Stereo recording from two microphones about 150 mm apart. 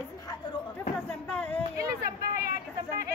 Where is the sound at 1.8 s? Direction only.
90° right.